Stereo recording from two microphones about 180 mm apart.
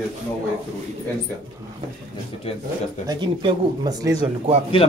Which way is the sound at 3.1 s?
25° right (ahead or behind).